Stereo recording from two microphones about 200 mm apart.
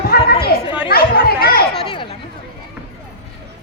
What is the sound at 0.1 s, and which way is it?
Chatter, 50° left (ahead or behind).